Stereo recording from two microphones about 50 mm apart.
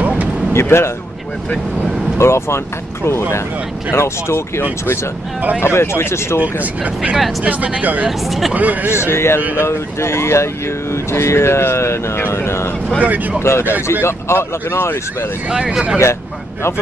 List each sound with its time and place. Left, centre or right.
0.5 s speech: left
2.1 s speech: left
6.4 s speech: right
8.3 s speech: centre
8.5 s speech: right
8.9 s speech: left
13.0 s speech: right
13.4 s speech: left
15.5 s speech: centre